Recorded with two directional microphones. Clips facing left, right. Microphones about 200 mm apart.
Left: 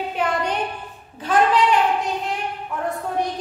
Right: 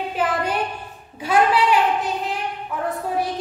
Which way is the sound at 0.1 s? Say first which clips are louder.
Right 1 dB; 5° right (ahead or behind).